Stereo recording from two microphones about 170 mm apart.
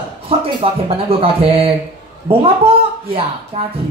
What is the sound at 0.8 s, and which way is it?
Speech, 35° right (ahead or behind).